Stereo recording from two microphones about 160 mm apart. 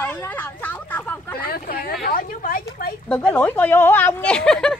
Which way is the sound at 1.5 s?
70° left (ahead or behind).